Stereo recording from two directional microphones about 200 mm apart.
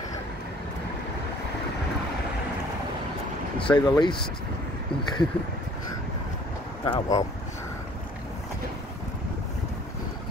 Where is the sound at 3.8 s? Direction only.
20° left (ahead or behind).